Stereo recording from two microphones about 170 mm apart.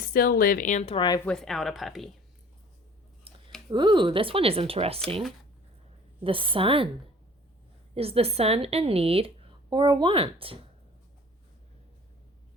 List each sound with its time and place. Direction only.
0.0 s speech: 60° left (ahead or behind); by 1.2 s 25° left (ahead or behind)
1.2 s speech: 5° left (ahead or behind)
3.7 s speech: 25° right (ahead or behind)
6.2 s speech: 30° right (ahead or behind)
7.9 s speech: 35° right (ahead or behind)